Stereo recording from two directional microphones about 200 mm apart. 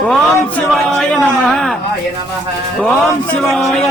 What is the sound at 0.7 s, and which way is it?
A man's voice, centre (ahead or behind).